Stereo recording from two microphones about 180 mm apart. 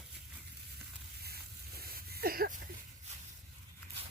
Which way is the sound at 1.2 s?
60° right (ahead or behind).